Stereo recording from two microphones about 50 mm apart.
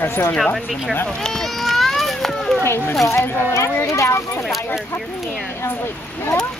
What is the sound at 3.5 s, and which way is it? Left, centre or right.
Speech, left.